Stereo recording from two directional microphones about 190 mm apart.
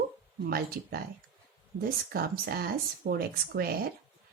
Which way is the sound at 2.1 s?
55° right (ahead or behind).